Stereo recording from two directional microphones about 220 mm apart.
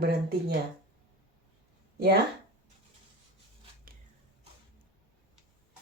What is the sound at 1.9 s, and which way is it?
Speech, 45° right (ahead or behind).